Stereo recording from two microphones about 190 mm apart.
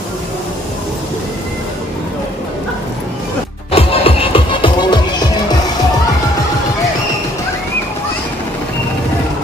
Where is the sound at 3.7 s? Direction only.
30° left (ahead or behind).